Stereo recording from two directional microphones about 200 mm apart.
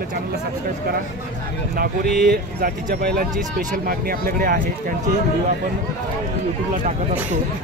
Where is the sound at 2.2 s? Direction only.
50° right (ahead or behind).